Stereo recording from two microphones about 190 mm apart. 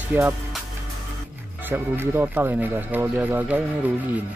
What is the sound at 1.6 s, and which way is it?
Speech, 10° right (ahead or behind).